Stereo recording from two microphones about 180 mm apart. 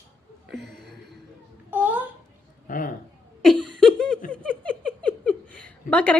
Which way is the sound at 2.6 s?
50° left (ahead or behind).